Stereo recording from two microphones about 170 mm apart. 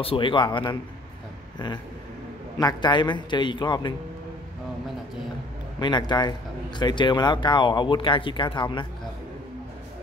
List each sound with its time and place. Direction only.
0.0 s speech: 30° left (ahead or behind)
2.6 s speech: 25° left (ahead or behind)
5.8 s speech: 25° left (ahead or behind)